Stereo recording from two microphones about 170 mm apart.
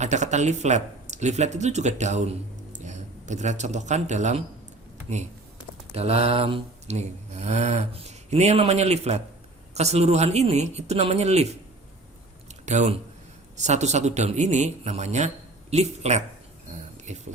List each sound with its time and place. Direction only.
0.0 s speech: 45° right (ahead or behind)
5.9 s speech: 35° right (ahead or behind)
12.6 s speech: 45° right (ahead or behind)